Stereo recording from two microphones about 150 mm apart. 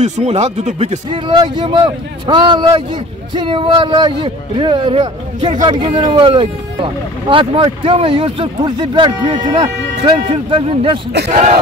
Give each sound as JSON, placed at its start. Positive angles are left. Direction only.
{"t": 0.0, "sound": "speech", "side_deg": -45}
{"t": 11.2, "sound": "speech", "side_deg": -50}